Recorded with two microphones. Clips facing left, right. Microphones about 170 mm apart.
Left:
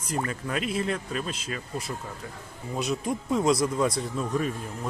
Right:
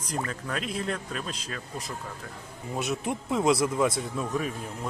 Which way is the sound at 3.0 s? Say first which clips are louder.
Left 2 dB; 20° right (ahead or behind).